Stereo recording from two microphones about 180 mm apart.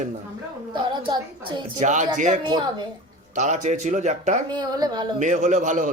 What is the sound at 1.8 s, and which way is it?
Speech, 45° right (ahead or behind).